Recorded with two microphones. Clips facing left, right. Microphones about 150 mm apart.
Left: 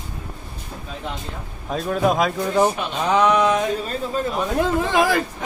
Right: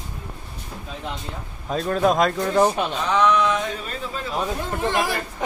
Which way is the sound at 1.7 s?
5° left (ahead or behind).